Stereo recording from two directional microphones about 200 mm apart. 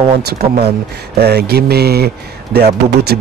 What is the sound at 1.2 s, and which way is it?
Speech, 55° right (ahead or behind).